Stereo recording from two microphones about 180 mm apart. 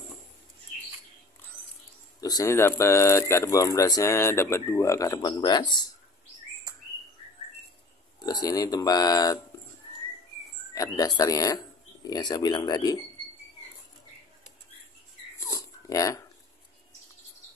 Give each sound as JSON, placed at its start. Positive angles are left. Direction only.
{"t": 2.1, "sound": "speech", "side_deg": 20}
{"t": 8.2, "sound": "speech", "side_deg": 20}
{"t": 10.7, "sound": "speech", "side_deg": 20}
{"t": 15.4, "sound": "dog", "side_deg": 20}